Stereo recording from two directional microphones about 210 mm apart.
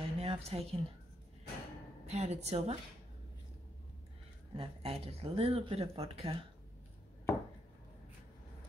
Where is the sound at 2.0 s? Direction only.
30° right (ahead or behind).